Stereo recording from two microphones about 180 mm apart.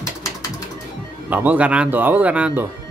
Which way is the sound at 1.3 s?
10° right (ahead or behind).